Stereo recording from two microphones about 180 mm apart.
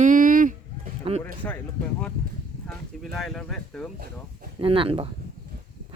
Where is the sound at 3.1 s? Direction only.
Centre (ahead or behind).